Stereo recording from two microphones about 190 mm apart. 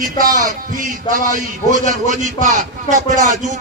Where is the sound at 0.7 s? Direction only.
45° right (ahead or behind).